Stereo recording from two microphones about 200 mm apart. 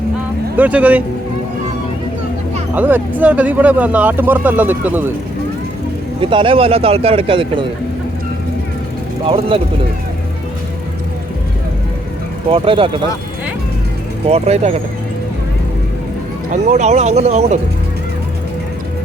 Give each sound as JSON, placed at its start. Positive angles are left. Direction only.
{"t": 0.5, "sound": "speech", "side_deg": -10}
{"t": 2.7, "sound": "speech", "side_deg": -10}
{"t": 6.1, "sound": "a man's voice", "side_deg": -25}
{"t": 9.2, "sound": "a man's voice", "side_deg": -25}
{"t": 12.5, "sound": "a man's voice", "side_deg": -25}
{"t": 14.3, "sound": "speech", "side_deg": -30}
{"t": 16.5, "sound": "speech", "side_deg": -35}